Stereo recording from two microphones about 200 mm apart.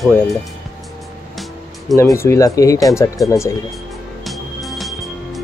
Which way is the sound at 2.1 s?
15° left (ahead or behind).